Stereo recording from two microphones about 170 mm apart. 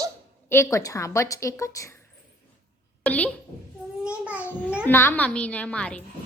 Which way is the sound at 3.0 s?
10° left (ahead or behind).